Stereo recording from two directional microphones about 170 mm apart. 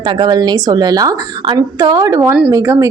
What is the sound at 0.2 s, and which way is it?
A woman's voice, 25° right (ahead or behind).